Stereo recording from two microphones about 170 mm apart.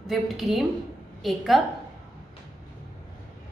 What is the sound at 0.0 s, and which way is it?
A woman's voice, centre (ahead or behind).